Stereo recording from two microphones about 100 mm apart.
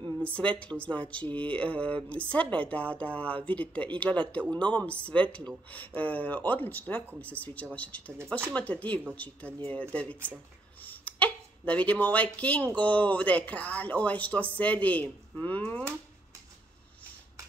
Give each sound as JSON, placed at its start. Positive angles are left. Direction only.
{"t": 0.2, "sound": "speech", "side_deg": 15}